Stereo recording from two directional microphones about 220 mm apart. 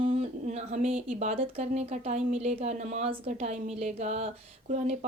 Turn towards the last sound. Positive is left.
turn(degrees=-30)  # may be behind; listen again after turning